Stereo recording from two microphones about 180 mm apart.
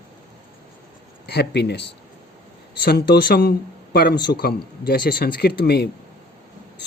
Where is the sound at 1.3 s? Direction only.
65° left (ahead or behind).